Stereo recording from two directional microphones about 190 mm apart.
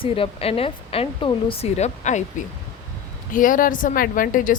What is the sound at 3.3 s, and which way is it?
A woman's voice, 45° left (ahead or behind).